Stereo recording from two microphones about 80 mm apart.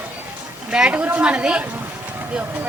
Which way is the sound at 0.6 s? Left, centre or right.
Centre.